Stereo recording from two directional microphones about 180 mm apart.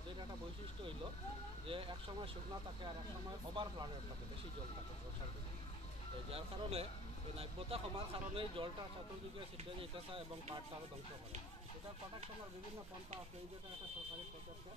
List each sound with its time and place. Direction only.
1.7 s speech: 30° right (ahead or behind)
3.6 s speech: 30° right (ahead or behind)
6.3 s speech: 35° right (ahead or behind)
9.8 s speech: 30° right (ahead or behind)